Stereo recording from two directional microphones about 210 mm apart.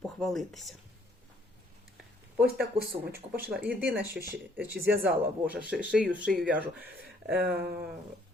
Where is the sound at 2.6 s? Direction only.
45° right (ahead or behind).